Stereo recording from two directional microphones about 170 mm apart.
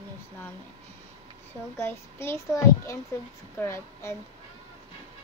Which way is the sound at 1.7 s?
15° left (ahead or behind).